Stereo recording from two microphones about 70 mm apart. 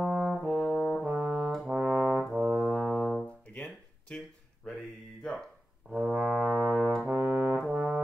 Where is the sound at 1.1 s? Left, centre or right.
Centre.